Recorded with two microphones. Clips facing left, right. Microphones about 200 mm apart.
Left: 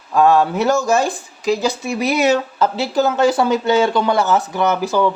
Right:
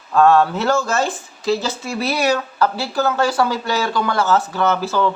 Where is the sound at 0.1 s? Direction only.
15° left (ahead or behind).